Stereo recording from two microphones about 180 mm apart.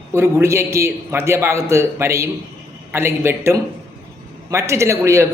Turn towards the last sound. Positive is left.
turn(degrees=-15)  # may be behind; listen again after turning